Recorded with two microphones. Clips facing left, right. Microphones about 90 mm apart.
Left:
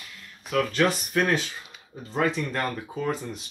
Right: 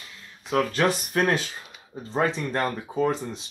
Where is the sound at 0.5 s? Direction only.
30° right (ahead or behind).